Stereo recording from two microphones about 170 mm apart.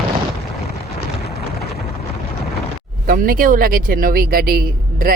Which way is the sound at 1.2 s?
70° left (ahead or behind).